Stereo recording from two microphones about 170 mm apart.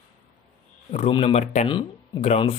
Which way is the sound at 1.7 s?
30° left (ahead or behind).